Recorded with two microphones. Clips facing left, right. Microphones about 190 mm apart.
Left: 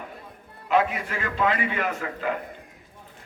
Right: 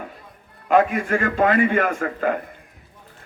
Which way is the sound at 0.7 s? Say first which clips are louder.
Right 6 dB; 50° right (ahead or behind).